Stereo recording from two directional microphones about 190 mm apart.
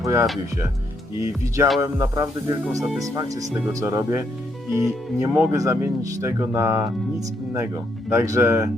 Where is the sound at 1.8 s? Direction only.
20° right (ahead or behind).